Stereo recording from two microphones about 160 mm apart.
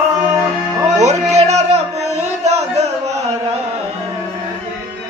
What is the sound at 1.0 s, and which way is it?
Music, 45° right (ahead or behind).